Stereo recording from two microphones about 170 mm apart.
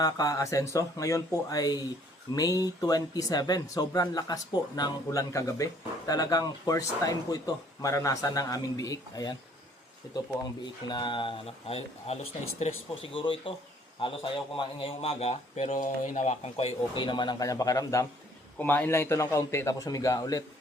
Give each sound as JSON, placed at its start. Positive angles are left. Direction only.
{"t": 0.0, "sound": "speech", "side_deg": 20}
{"t": 10.8, "sound": "a man's voice", "side_deg": 25}